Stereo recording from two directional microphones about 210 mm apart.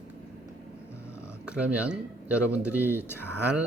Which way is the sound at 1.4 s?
5° right (ahead or behind).